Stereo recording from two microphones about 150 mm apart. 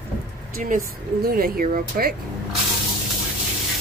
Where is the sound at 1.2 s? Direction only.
75° right (ahead or behind).